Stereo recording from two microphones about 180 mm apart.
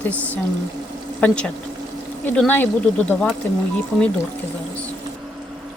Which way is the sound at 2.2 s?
10° left (ahead or behind).